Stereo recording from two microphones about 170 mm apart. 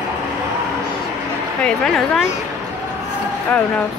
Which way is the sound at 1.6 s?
5° left (ahead or behind).